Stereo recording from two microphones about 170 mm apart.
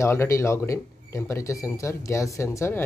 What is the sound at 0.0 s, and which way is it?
Speech, 15° left (ahead or behind).